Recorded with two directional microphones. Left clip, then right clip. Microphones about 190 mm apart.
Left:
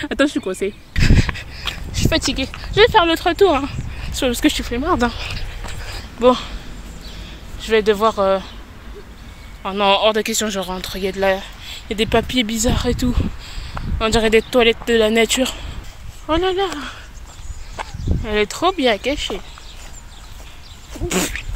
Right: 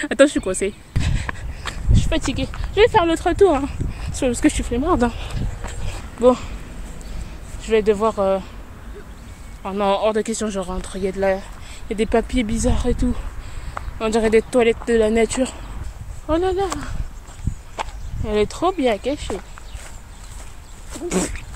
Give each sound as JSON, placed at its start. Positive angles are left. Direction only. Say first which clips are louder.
{"t": 0.0, "sound": "speech", "louder": "right 3 dB", "side_deg": -5}
{"t": 0.9, "sound": "a sound", "louder": "left 8 dB", "side_deg": -15}
{"t": 2.0, "sound": "a sound", "louder": "left 5 dB", "side_deg": 20}
{"t": 2.2, "sound": "speech", "louder": "left 4 dB", "side_deg": 10}
{"t": 2.9, "sound": "speech", "louder": "left 3 dB", "side_deg": 0}
{"t": 4.6, "sound": "speech", "louder": "left 1 dB", "side_deg": -15}
{"t": 7.6, "sound": "speech", "louder": "left 2 dB", "side_deg": 5}
{"t": 9.6, "sound": "speech", "louder": "left 4 dB", "side_deg": 5}
{"t": 17.8, "sound": "walk", "louder": "right 1 dB", "side_deg": -15}
{"t": 18.2, "sound": "speech", "louder": "left 2 dB", "side_deg": -5}
{"t": 21.1, "sound": "dog", "louder": "left 3 dB", "side_deg": 0}